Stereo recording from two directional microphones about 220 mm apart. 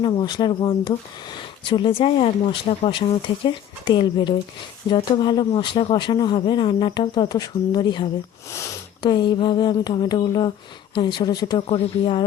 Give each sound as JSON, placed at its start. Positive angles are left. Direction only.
{"t": 0.0, "sound": "speech", "side_deg": 20}